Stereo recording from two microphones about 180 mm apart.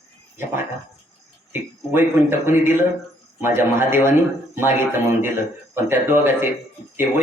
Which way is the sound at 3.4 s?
15° right (ahead or behind).